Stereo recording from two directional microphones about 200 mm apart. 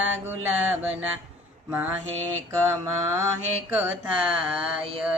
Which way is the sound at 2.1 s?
90° right.